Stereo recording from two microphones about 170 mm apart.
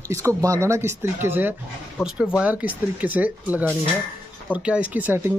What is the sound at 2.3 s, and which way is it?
Speech, 10° right (ahead or behind).